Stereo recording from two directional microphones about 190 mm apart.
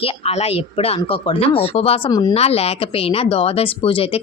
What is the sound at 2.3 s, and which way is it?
A woman's voice, 35° left (ahead or behind).